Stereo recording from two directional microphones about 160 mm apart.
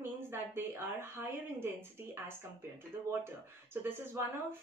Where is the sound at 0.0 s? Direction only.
15° right (ahead or behind).